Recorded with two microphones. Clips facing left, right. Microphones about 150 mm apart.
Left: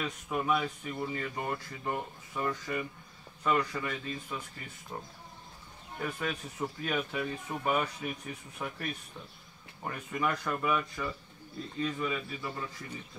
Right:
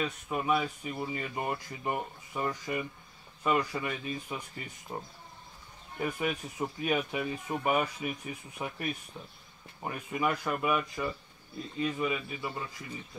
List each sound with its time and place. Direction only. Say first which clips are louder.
0.0 s speech: right 1 dB; 5° right (ahead or behind)